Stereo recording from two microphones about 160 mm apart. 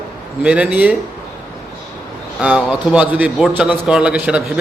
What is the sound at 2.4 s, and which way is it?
A man's voice, 5° right (ahead or behind).